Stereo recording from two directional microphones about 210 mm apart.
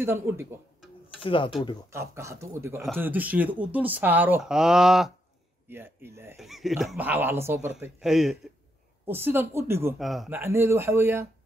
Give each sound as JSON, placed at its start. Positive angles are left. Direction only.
{"t": 0.0, "sound": "speech", "side_deg": -10}
{"t": 1.2, "sound": "speech", "side_deg": 25}
{"t": 1.9, "sound": "speech", "side_deg": -15}
{"t": 9.9, "sound": "speech", "side_deg": 0}